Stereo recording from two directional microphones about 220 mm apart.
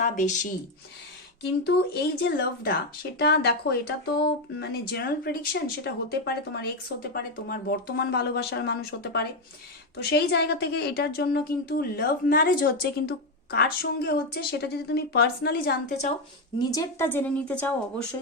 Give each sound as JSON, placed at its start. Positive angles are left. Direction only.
{"t": 0.0, "sound": "speech", "side_deg": 35}
{"t": 1.4, "sound": "speech", "side_deg": 50}
{"t": 16.6, "sound": "a woman's voice", "side_deg": 15}